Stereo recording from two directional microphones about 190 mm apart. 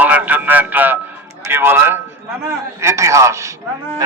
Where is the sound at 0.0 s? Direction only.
10° right (ahead or behind).